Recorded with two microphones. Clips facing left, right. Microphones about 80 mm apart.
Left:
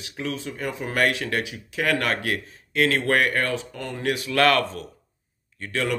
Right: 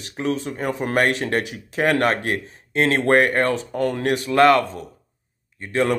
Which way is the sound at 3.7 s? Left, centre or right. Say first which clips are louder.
Right 11 dB; right.